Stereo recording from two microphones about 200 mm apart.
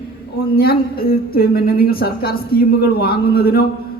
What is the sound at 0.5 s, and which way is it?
A man's voice, 50° left (ahead or behind).